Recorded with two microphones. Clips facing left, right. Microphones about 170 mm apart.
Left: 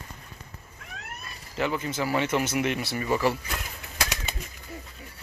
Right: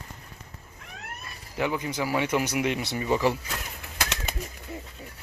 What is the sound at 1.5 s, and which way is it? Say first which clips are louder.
Speech: even; 15° right (ahead or behind).